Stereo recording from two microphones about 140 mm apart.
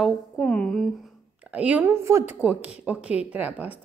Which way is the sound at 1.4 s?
10° right (ahead or behind).